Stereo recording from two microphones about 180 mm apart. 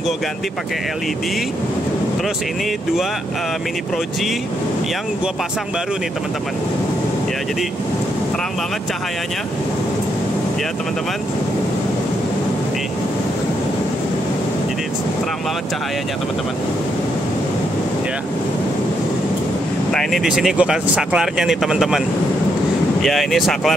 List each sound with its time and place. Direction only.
19.9 s speech: centre (ahead or behind)
23.0 s speech: centre (ahead or behind)